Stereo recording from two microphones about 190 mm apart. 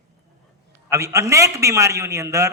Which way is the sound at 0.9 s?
15° right (ahead or behind).